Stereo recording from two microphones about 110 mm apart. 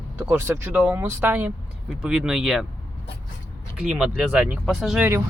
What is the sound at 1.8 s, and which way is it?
Speech, 5° right (ahead or behind).